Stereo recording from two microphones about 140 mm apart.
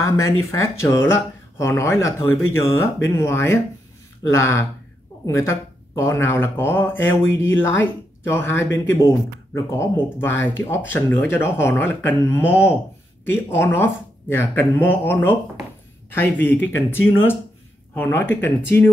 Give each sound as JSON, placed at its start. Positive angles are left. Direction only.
{"t": 0.0, "sound": "speech", "side_deg": 20}